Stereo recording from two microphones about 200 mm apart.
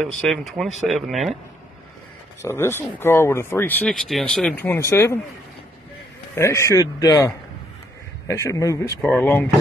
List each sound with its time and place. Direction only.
0.0 s speech: centre (ahead or behind)
2.4 s speech: 10° left (ahead or behind)
6.3 s speech: 15° left (ahead or behind)